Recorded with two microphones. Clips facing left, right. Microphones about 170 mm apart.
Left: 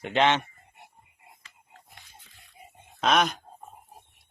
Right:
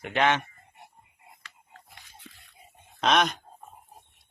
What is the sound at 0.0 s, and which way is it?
Speech, 20° left (ahead or behind).